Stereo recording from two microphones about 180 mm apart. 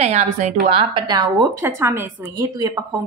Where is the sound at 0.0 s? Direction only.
40° right (ahead or behind).